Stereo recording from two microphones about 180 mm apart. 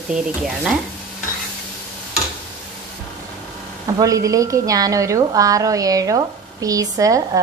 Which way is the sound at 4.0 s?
20° right (ahead or behind).